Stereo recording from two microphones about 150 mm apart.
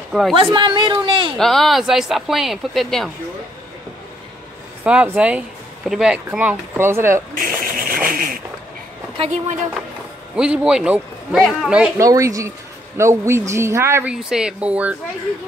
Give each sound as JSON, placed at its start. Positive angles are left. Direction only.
{"t": 0.3, "sound": "a woman's voice", "side_deg": -35}
{"t": 1.4, "sound": "speech", "side_deg": 0}
{"t": 4.8, "sound": "a woman's voice", "side_deg": -10}
{"t": 7.3, "sound": "vehicle", "side_deg": -70}
{"t": 10.3, "sound": "speech", "side_deg": -5}
{"t": 12.0, "sound": "a woman's voice", "side_deg": -20}
{"t": 14.3, "sound": "a woman's voice", "side_deg": -5}